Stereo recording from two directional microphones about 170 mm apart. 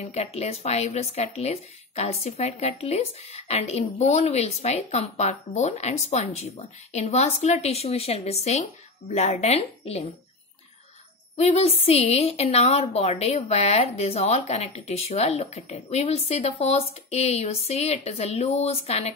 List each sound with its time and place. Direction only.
0.0 s speech: 40° left (ahead or behind)
11.3 s speech: 40° left (ahead or behind)